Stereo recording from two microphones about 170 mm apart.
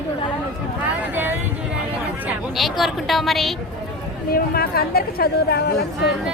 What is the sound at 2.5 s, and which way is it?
A woman's voice, centre (ahead or behind).